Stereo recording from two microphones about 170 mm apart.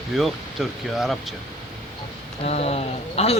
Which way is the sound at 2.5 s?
35° left (ahead or behind).